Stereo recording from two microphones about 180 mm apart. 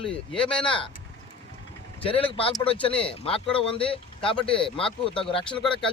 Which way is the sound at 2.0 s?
30° left (ahead or behind).